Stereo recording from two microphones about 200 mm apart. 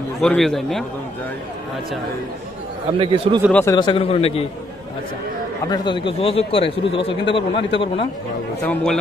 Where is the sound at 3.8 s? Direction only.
25° left (ahead or behind).